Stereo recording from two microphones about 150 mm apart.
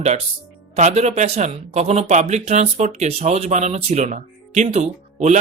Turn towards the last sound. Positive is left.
turn(degrees=-50)  # may be behind; listen again after turning